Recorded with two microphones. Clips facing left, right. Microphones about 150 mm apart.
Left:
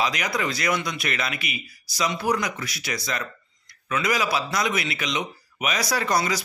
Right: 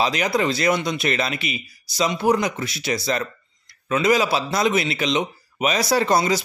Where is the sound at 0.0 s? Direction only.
30° right (ahead or behind).